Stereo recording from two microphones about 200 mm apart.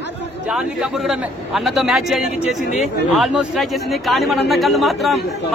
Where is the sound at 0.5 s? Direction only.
5° right (ahead or behind).